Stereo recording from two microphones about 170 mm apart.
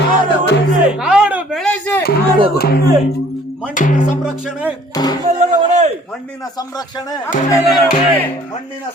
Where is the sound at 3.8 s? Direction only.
50° left (ahead or behind).